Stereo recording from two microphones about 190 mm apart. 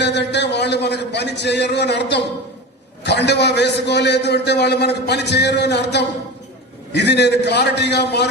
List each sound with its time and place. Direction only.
0.0 s a man's voice: 65° left (ahead or behind)